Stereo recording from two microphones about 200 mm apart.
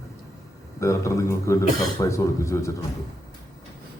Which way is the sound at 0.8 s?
15° left (ahead or behind).